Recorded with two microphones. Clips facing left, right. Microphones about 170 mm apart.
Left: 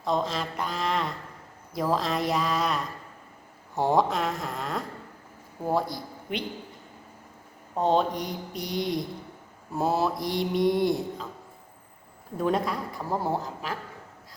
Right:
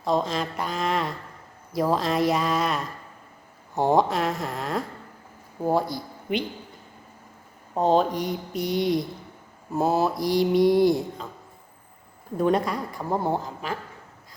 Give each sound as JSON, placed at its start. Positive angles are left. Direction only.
{"t": 0.3, "sound": "mantra", "side_deg": 0}
{"t": 5.7, "sound": "a man's voice", "side_deg": 0}
{"t": 7.8, "sound": "mantra", "side_deg": 0}
{"t": 12.5, "sound": "mantra", "side_deg": 0}
{"t": 13.0, "sound": "speech", "side_deg": -20}
{"t": 13.3, "sound": "mantra", "side_deg": 0}